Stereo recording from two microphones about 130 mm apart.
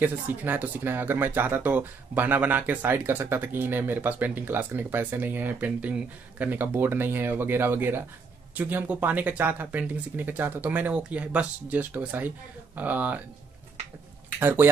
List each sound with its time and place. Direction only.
0.0 s speech: 15° right (ahead or behind)
14.4 s speech: 15° right (ahead or behind)